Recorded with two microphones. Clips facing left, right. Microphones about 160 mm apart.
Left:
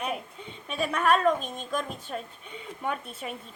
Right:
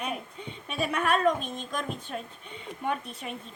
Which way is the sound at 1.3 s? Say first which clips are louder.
Right 1 dB; 40° left (ahead or behind).